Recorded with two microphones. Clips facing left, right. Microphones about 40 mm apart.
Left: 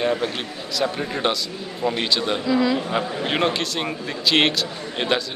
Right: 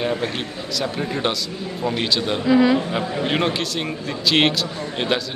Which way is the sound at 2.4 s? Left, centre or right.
Right.